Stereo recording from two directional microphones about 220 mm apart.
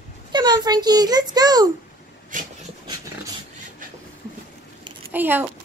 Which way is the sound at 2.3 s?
35° right (ahead or behind).